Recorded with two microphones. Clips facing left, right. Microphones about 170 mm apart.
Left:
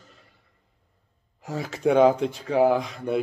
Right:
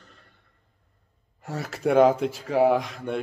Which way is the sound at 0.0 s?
Centre (ahead or behind).